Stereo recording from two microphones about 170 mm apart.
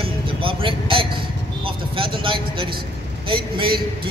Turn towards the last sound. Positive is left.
turn(degrees=-30)  # may be behind; listen again after turning